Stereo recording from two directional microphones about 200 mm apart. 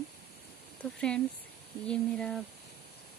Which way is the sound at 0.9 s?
5° left (ahead or behind).